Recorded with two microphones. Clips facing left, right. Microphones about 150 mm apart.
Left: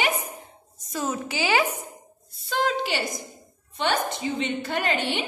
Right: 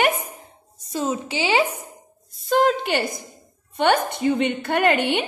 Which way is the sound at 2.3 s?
45° right (ahead or behind).